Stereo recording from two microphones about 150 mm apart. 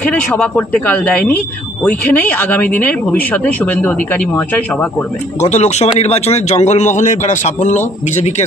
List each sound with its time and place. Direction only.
0.0 s speech: 10° left (ahead or behind)
5.4 s a man's voice: 50° left (ahead or behind)